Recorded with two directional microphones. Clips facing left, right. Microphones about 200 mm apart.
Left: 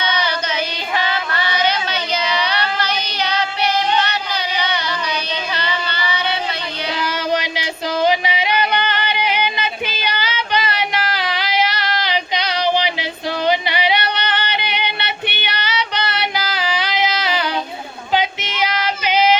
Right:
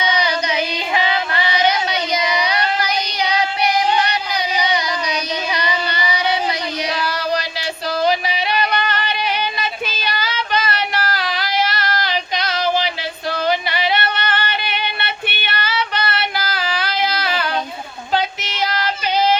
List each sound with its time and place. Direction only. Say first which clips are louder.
0.0 s child singing: right 2 dB; 15° right (ahead or behind)
3.9 s music: right 1 dB; 15° right (ahead or behind)
5.5 s child singing: right 2 dB; 15° right (ahead or behind)
7.3 s music: left 2 dB; 15° left (ahead or behind)
8.1 s a sound: left 1 dB; 15° left (ahead or behind)
18.1 s child singing: left 1 dB; 15° left (ahead or behind)